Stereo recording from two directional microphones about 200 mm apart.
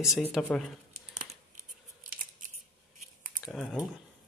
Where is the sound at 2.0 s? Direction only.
40° right (ahead or behind).